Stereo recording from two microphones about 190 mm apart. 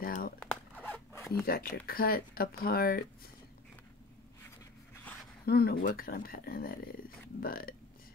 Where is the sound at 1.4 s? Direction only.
50° left (ahead or behind).